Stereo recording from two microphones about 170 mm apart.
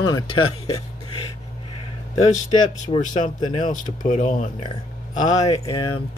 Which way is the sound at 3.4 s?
30° left (ahead or behind).